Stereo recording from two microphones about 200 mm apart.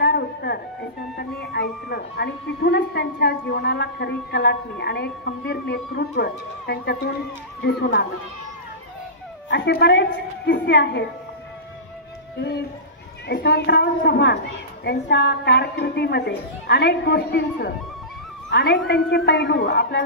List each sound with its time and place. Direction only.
0.0 s a sound: 55° left (ahead or behind)
1.1 s a woman's voice: 50° left (ahead or behind)
9.5 s a woman's voice: 55° left (ahead or behind)
13.3 s a woman's voice: 55° left (ahead or behind)